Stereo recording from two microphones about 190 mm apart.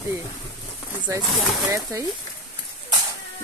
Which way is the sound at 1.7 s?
15° right (ahead or behind).